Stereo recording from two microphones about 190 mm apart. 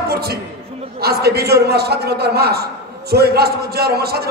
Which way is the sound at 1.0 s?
55° right (ahead or behind).